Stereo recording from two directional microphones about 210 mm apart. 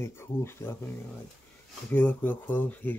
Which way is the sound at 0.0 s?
10° left (ahead or behind).